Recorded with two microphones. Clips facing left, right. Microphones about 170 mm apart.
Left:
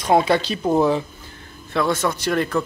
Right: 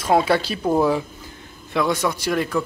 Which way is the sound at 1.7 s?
15° right (ahead or behind).